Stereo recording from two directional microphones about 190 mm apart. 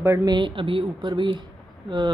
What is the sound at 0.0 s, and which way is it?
Speech, 15° right (ahead or behind).